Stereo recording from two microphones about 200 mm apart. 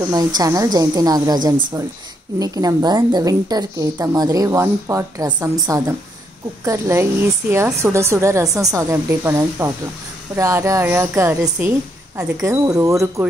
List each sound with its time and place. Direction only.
0.1 s a woman's voice: 20° right (ahead or behind)